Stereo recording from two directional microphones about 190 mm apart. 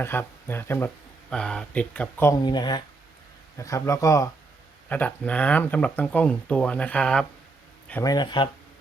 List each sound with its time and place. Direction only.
0.0 s speech: 10° left (ahead or behind)
2.4 s speech: 25° left (ahead or behind); by 7.3 s 5° left (ahead or behind)
8.0 s speech: 20° left (ahead or behind)